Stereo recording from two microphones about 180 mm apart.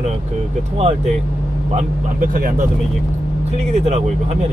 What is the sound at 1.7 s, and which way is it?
Speech, 45° right (ahead or behind).